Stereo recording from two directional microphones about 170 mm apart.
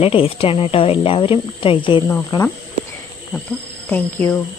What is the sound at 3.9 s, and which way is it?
Speech, 15° left (ahead or behind).